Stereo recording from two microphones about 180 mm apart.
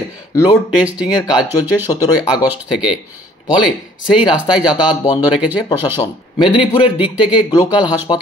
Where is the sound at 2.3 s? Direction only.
5° right (ahead or behind).